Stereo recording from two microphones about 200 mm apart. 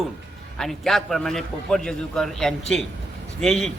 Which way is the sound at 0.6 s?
Centre (ahead or behind).